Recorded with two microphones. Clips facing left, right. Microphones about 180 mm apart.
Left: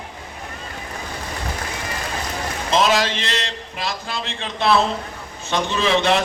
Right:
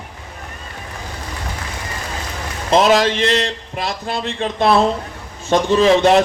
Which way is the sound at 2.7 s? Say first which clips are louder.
Right 5 dB; 50° right (ahead or behind).